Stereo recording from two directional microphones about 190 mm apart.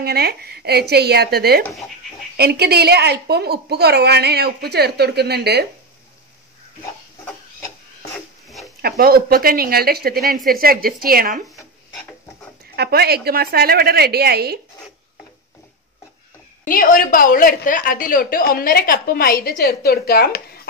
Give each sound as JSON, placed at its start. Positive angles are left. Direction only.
{"t": 0.0, "sound": "a woman's voice", "side_deg": -55}
{"t": 1.7, "sound": "speech", "side_deg": 0}
{"t": 2.3, "sound": "a woman's voice", "side_deg": -60}
{"t": 7.2, "sound": "a sound", "side_deg": 15}
{"t": 8.8, "sound": "speech", "side_deg": -55}
{"t": 12.7, "sound": "a woman's voice", "side_deg": -55}
{"t": 16.6, "sound": "a woman's voice", "side_deg": 45}